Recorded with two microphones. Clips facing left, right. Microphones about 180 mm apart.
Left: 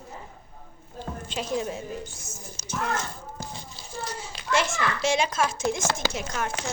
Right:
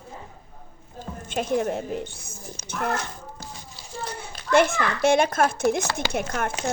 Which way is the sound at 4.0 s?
55° right (ahead or behind).